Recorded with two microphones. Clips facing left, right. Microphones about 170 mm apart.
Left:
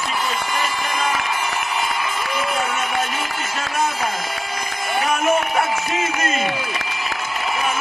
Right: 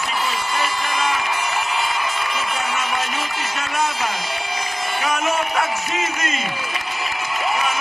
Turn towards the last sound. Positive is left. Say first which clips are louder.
# left 4 dB
turn(degrees=55)  # may be behind; listen again after turning